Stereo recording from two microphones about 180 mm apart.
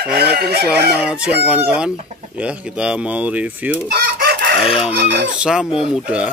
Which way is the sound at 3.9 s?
60° right (ahead or behind).